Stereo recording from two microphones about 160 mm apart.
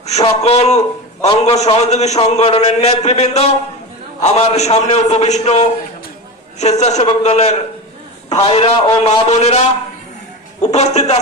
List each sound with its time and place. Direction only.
0.0 s a man's voice: 40° left (ahead or behind)